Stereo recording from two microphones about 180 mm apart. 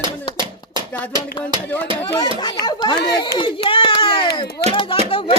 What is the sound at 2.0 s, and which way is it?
Speech, 20° left (ahead or behind).